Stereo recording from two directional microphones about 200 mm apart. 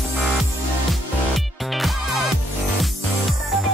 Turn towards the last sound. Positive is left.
turn(degrees=0)  # may be behind; listen again after turning